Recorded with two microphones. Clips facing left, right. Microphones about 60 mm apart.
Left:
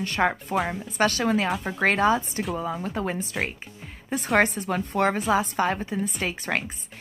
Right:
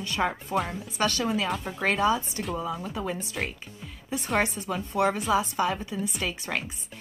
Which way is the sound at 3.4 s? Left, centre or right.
Left.